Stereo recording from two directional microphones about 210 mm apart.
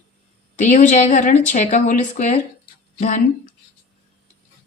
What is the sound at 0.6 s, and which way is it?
A woman's voice, 35° left (ahead or behind).